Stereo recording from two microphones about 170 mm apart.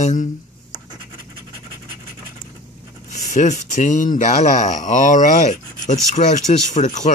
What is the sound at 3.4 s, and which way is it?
Speech, 45° left (ahead or behind).